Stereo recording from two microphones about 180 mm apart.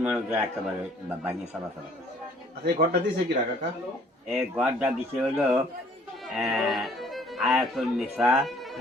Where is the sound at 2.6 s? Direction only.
55° right (ahead or behind).